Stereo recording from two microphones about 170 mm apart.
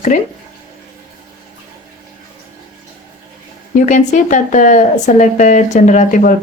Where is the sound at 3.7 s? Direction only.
45° left (ahead or behind).